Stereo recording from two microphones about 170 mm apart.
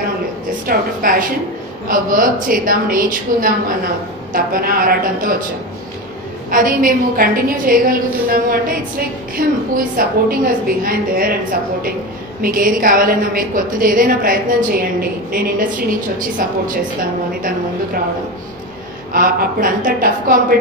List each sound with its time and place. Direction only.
0.7 s a woman's voice: 55° right (ahead or behind)
6.5 s a woman's voice: 55° right (ahead or behind)
12.4 s a woman's voice: 55° right (ahead or behind)
19.1 s a woman's voice: 55° right (ahead or behind)